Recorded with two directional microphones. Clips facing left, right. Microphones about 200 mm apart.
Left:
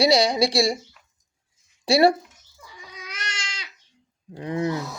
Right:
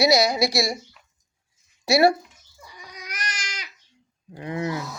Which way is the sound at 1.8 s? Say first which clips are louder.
Left 1 dB; 30° left (ahead or behind).